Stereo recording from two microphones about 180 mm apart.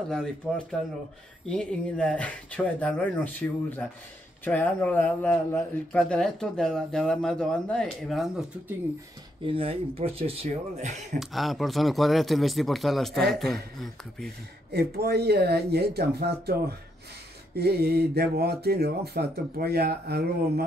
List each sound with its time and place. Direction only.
0.1 s speech: centre (ahead or behind)
9.4 s speech: 30° right (ahead or behind)
11.1 s speech: centre (ahead or behind)
14.7 s speech: 60° right (ahead or behind)